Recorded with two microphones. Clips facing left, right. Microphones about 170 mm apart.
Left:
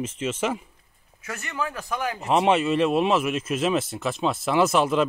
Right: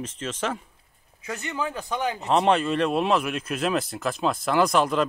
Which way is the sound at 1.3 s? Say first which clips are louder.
Right 1 dB; 20° right (ahead or behind).